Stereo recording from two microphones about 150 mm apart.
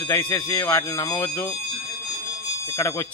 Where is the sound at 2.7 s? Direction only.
20° left (ahead or behind).